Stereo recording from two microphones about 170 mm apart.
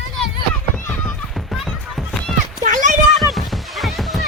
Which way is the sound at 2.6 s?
50° right (ahead or behind).